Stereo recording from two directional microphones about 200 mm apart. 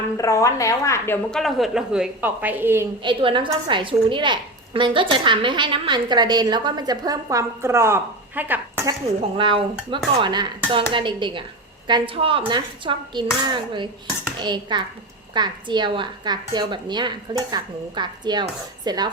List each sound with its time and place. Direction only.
0.2 s a woman's voice: 15° left (ahead or behind); by 2.8 s 10° right (ahead or behind)
3.0 s a woman's voice: 25° right (ahead or behind); by 8.9 s 10° right (ahead or behind)
9.4 s a woman's voice: 25° right (ahead or behind)